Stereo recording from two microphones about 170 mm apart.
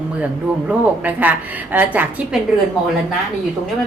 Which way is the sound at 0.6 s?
10° right (ahead or behind).